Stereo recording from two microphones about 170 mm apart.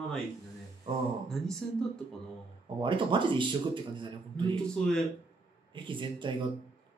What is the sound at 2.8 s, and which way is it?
A man's voice, 30° right (ahead or behind).